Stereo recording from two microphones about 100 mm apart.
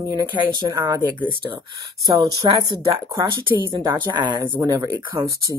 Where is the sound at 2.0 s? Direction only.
40° right (ahead or behind).